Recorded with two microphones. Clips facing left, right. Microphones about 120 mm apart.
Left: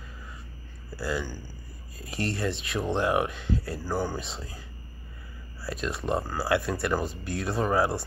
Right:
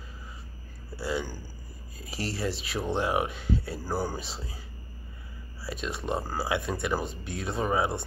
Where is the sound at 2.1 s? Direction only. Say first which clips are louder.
Left 2 dB; centre (ahead or behind).